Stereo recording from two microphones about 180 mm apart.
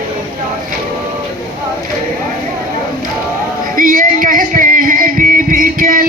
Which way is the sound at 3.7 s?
50° right (ahead or behind).